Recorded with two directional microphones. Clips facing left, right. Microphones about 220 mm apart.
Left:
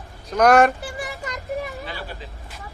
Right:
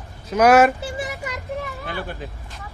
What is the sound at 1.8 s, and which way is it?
Speech, 50° right (ahead or behind).